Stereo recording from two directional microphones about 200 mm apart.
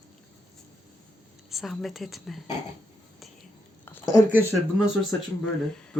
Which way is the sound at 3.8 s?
10° left (ahead or behind).